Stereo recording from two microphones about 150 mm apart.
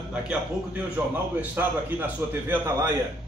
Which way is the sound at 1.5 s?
10° right (ahead or behind).